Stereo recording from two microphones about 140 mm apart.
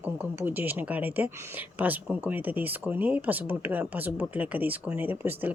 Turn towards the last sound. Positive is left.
turn(degrees=-15)  # may be behind; listen again after turning